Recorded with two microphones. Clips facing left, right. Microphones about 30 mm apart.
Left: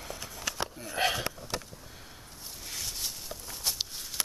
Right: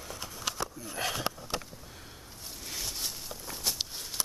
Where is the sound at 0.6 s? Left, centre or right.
Left.